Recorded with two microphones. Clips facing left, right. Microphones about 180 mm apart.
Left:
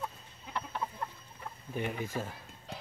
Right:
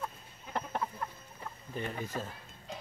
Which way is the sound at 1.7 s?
10° left (ahead or behind).